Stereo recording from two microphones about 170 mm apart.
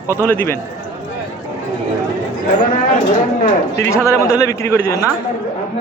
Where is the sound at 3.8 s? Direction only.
15° left (ahead or behind).